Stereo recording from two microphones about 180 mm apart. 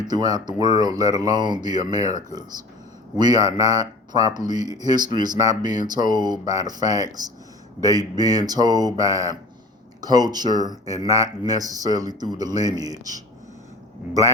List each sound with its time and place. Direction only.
0.0 s speech: 20° right (ahead or behind)